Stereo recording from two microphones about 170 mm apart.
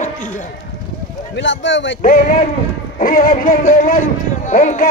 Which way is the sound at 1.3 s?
90° left.